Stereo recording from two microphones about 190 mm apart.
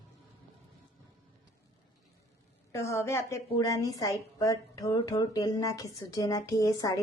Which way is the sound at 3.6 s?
20° left (ahead or behind).